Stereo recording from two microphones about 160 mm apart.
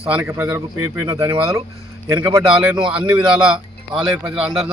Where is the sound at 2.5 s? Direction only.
5° right (ahead or behind).